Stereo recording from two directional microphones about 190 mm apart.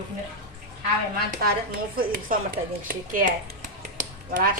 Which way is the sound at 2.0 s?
50° right (ahead or behind).